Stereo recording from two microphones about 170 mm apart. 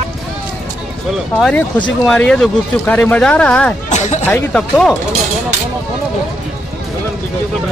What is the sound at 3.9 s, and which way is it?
Speech, 45° left (ahead or behind).